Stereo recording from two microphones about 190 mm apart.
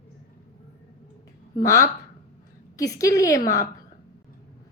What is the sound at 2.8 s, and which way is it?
Speech, 15° left (ahead or behind).